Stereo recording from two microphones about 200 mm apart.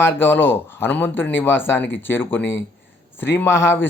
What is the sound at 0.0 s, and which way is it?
Speech, 10° left (ahead or behind).